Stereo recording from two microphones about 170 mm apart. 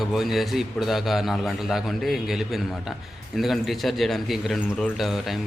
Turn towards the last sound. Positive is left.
turn(degrees=0)  # may be behind; listen again after turning